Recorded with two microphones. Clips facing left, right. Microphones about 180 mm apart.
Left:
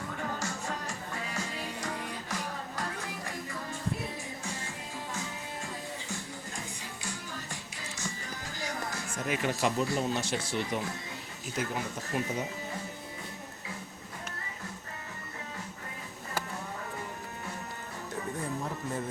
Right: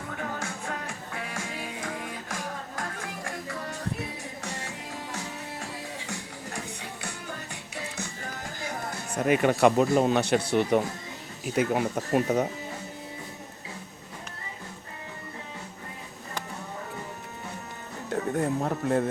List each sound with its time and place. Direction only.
0.3 s music: 55° right (ahead or behind)
6.1 s music: 65° right (ahead or behind)
9.1 s speech: 60° right (ahead or behind)
18.1 s speech: 65° right (ahead or behind)